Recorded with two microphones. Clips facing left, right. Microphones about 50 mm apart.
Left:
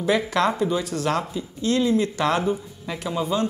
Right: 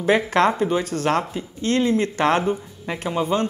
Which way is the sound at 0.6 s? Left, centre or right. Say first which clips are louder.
Right 2 dB; right.